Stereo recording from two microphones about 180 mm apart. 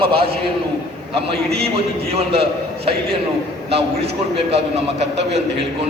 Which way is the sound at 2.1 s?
35° right (ahead or behind).